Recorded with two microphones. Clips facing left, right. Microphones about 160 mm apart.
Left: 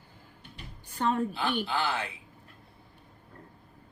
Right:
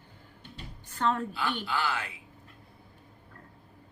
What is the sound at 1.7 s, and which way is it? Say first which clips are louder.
Speech: left 1 dB; 30° left (ahead or behind).